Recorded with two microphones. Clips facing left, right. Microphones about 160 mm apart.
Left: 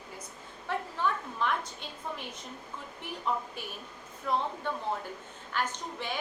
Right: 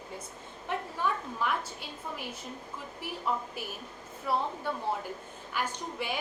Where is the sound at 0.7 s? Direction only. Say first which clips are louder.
Even; 20° right (ahead or behind).